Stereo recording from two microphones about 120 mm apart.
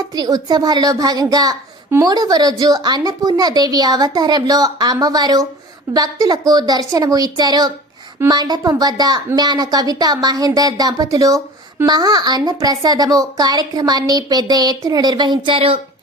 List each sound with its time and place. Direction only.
0.2 s a woman's voice: 30° right (ahead or behind); by 15.8 s 50° right (ahead or behind)